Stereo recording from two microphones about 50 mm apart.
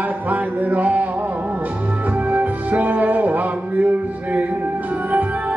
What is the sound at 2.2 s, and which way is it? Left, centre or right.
Music, right.